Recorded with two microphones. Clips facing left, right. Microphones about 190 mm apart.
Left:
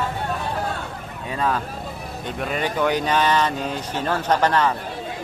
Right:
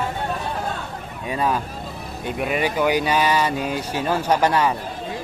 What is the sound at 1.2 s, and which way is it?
Speech, 15° right (ahead or behind).